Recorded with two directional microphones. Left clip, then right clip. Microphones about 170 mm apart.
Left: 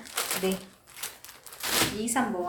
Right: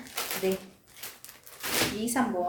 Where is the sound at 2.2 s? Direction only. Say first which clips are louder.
Left 1 dB; 15° right (ahead or behind).